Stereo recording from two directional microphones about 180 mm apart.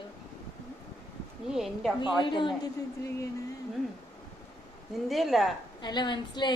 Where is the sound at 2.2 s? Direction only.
25° left (ahead or behind).